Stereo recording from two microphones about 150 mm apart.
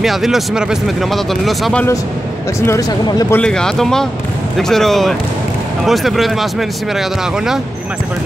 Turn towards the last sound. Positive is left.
turn(degrees=0)  # may be behind; listen again after turning